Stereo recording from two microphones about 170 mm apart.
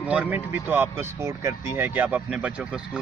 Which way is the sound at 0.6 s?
15° right (ahead or behind).